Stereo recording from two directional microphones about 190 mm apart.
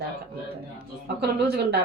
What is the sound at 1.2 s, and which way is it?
Speech, 55° right (ahead or behind).